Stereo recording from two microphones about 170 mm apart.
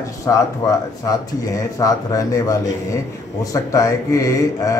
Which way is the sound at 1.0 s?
20° left (ahead or behind).